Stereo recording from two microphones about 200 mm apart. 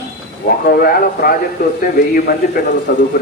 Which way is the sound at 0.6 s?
50° left (ahead or behind).